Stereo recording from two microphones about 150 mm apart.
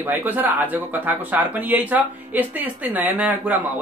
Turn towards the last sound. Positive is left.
turn(degrees=-10)  # may be behind; listen again after turning